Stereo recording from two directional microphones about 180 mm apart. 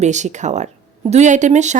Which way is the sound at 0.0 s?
40° right (ahead or behind).